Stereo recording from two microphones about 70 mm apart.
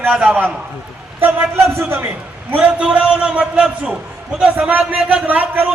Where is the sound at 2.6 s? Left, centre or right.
Centre.